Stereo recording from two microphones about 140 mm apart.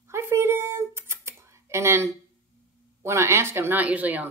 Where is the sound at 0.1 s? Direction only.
20° right (ahead or behind).